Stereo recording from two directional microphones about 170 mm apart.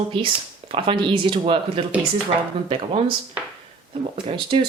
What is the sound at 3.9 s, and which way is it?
Speech, 30° right (ahead or behind).